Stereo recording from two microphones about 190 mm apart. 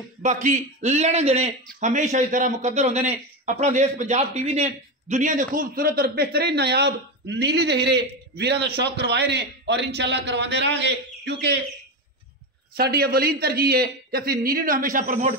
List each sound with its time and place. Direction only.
0.2 s a man's voice: 40° right (ahead or behind); by 11.5 s 65° right (ahead or behind)
12.7 s speech: 55° right (ahead or behind)